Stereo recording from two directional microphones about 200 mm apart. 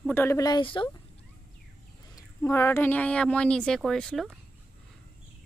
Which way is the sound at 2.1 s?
15° left (ahead or behind).